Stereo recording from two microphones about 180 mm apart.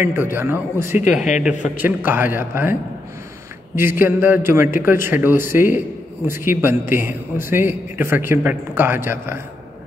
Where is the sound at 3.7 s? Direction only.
10° right (ahead or behind).